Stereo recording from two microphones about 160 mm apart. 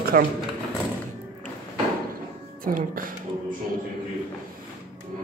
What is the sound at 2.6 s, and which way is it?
Speech, 60° right (ahead or behind).